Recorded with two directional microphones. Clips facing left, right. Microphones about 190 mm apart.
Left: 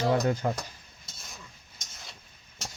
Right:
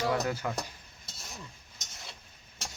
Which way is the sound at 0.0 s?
25° left (ahead or behind).